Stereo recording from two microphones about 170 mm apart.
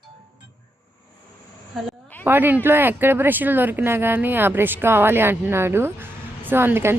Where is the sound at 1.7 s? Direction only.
Centre (ahead or behind).